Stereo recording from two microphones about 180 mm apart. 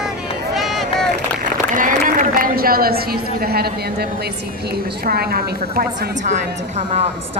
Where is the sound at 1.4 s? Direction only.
45° right (ahead or behind).